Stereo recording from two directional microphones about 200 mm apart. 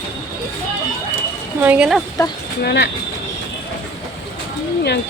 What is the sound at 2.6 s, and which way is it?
Speech, 55° left (ahead or behind).